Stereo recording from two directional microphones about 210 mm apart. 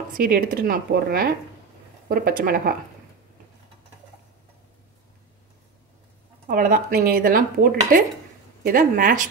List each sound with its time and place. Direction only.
0.2 s speech: 45° right (ahead or behind)
6.4 s speech: 40° right (ahead or behind)